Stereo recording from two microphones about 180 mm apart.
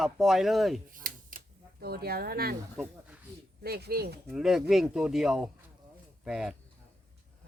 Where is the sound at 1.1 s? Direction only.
50° right (ahead or behind).